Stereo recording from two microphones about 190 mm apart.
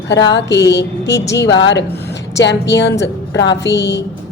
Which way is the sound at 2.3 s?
65° left (ahead or behind).